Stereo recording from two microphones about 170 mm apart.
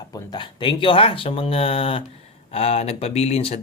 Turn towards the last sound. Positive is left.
turn(degrees=35)  # may be behind; listen again after turning